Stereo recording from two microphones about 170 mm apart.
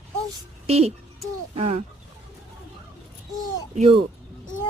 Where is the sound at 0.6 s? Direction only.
35° right (ahead or behind).